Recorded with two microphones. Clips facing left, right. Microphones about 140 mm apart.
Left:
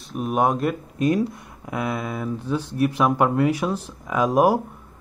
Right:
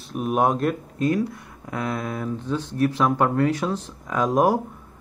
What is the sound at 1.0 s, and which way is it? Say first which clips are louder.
Speech: left 2 dB; 20° left (ahead or behind).